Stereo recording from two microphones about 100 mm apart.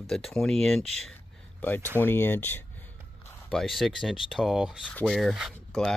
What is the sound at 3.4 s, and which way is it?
Speech, centre (ahead or behind).